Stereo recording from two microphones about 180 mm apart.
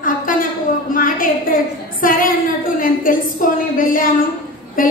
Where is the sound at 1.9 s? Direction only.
50° left (ahead or behind).